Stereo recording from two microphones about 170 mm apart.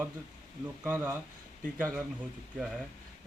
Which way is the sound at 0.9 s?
10° right (ahead or behind).